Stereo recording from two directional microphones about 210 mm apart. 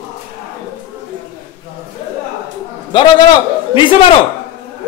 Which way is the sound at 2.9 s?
25° left (ahead or behind).